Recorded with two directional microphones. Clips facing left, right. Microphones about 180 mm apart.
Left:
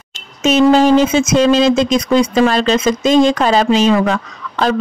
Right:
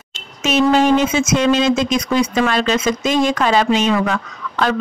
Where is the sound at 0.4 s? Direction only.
35° left (ahead or behind).